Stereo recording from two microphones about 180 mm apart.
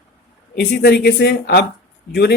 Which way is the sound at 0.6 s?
65° left (ahead or behind).